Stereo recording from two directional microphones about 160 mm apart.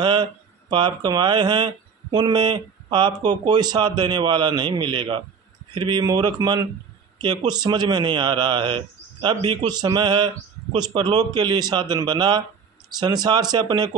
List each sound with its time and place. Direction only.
0.0 s a man's voice: 30° right (ahead or behind)